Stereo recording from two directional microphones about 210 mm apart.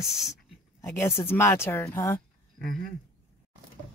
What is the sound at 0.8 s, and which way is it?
Speech, 10° left (ahead or behind).